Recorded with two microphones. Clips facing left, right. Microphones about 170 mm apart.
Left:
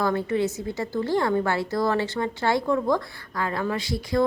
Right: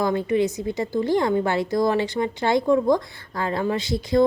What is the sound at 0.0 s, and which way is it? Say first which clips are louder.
A woman's voice: right 3 dB; 15° right (ahead or behind).